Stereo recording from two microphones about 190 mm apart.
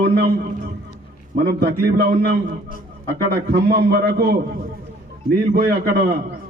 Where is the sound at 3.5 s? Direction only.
55° right (ahead or behind).